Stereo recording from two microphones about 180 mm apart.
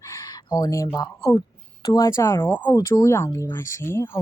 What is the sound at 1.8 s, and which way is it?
Speech, 25° left (ahead or behind).